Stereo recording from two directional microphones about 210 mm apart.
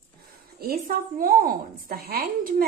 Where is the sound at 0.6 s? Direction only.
45° right (ahead or behind).